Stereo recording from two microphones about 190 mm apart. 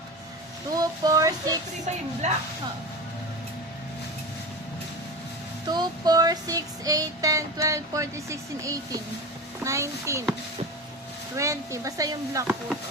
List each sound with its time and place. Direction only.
0.8 s child singing: 20° right (ahead or behind)
2.2 s speech: 40° right (ahead or behind)
5.6 s child singing: 20° right (ahead or behind)
9.6 s speech: 15° right (ahead or behind)
11.3 s speech: 15° right (ahead or behind)